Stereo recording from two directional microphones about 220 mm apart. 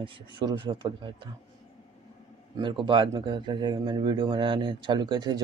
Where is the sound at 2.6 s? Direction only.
20° right (ahead or behind).